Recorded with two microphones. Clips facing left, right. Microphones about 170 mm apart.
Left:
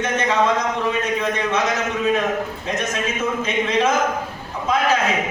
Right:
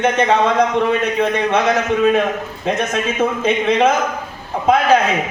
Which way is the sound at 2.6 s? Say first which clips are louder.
Right 10 dB; 60° right (ahead or behind).